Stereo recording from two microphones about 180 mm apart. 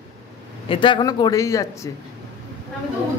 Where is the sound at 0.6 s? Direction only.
30° left (ahead or behind).